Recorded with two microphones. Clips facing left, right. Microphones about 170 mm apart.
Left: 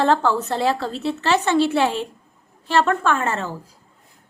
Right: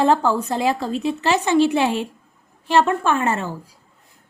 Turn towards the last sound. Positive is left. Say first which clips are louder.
# right 1 dB
turn(degrees=-15)  # may be behind; listen again after turning